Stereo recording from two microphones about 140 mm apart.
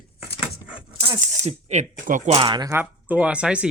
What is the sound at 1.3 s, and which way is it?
Speech, 55° right (ahead or behind).